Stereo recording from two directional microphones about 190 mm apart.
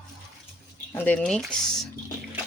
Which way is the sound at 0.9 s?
5° left (ahead or behind).